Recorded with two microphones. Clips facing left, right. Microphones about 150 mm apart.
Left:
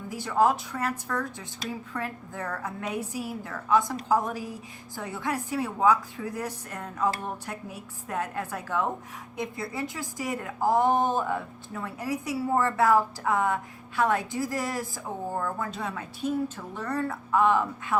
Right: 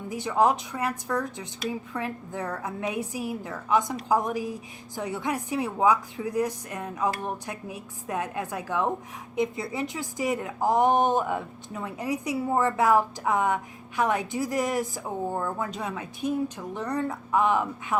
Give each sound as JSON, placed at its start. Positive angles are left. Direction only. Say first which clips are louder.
{"t": 0.1, "sound": "a woman's voice", "louder": "right 1 dB", "side_deg": -15}